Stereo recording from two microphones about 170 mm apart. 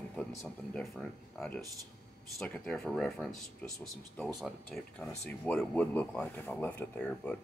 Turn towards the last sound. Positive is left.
turn(degrees=5)  # may be behind; listen again after turning